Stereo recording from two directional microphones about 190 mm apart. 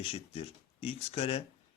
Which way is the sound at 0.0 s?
30° left (ahead or behind).